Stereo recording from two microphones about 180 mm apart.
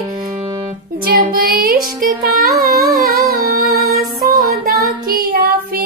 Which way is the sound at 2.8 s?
Centre (ahead or behind).